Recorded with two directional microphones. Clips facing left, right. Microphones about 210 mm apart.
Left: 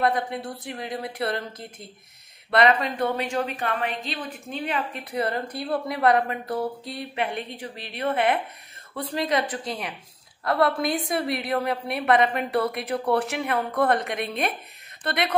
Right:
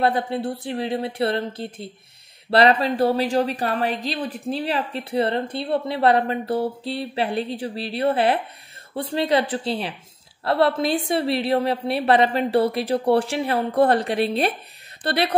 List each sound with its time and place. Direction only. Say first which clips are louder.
0.0 s a woman's voice: right 3 dB; 30° right (ahead or behind)